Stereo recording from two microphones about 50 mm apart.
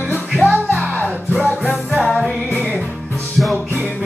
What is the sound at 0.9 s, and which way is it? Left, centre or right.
Music, left.